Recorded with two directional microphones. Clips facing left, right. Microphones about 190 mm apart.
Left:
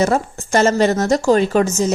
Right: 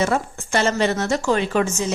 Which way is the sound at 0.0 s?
40° left (ahead or behind).